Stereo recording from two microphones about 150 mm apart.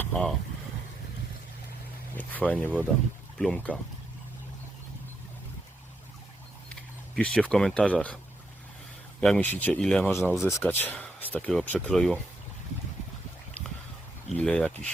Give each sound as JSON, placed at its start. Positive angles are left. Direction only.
{"t": 0.0, "sound": "speech", "side_deg": 5}
{"t": 2.1, "sound": "speech", "side_deg": 10}
{"t": 7.2, "sound": "speech", "side_deg": 5}
{"t": 9.2, "sound": "speech", "side_deg": 10}
{"t": 10.1, "sound": "speech", "side_deg": 15}
{"t": 14.3, "sound": "speech", "side_deg": 5}